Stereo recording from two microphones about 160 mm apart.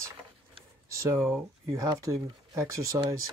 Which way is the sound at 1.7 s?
20° right (ahead or behind).